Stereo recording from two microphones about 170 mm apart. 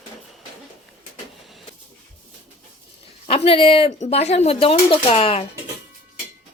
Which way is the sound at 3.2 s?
35° left (ahead or behind).